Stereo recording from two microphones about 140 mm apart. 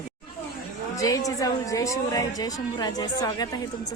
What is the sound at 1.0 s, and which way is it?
A woman's voice, 25° left (ahead or behind).